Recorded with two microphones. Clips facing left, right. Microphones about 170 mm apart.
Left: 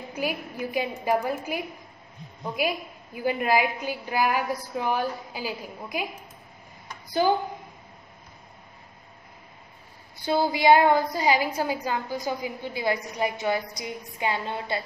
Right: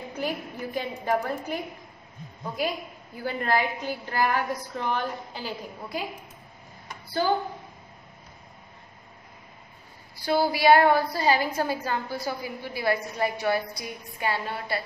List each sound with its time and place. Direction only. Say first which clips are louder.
0.1 s a woman's voice: left 2 dB; 10° left (ahead or behind)
3.2 s a woman's voice: left 3 dB; 15° left (ahead or behind)
7.1 s speech: left 2 dB; 15° left (ahead or behind)
10.1 s a woman's voice: even; 20° left (ahead or behind)